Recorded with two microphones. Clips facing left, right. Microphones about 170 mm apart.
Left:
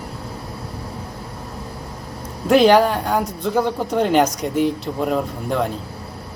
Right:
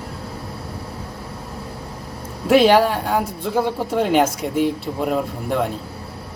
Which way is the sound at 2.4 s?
5° right (ahead or behind).